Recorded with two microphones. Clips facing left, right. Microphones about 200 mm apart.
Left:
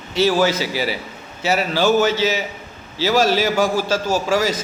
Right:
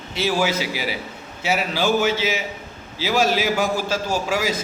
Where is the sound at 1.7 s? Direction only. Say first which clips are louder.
Left 4 dB; 10° right (ahead or behind).